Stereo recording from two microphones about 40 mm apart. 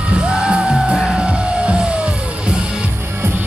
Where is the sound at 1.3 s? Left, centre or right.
Right.